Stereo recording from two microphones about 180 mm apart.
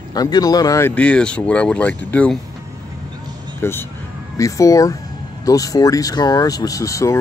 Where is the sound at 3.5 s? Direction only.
15° left (ahead or behind).